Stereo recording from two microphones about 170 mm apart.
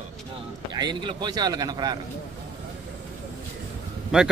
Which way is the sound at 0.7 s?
25° right (ahead or behind).